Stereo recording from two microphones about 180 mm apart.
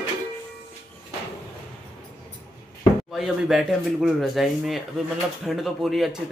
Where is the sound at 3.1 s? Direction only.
Centre (ahead or behind).